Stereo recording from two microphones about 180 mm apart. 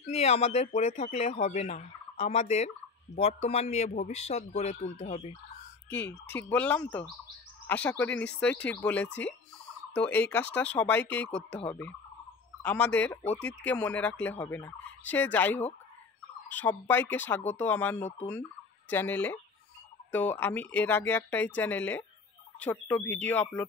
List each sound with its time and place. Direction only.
0.1 s speech: 35° left (ahead or behind)
5.9 s turkey: 10° left (ahead or behind)